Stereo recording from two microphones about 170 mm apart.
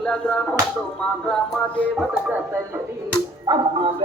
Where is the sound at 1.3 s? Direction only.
10° left (ahead or behind).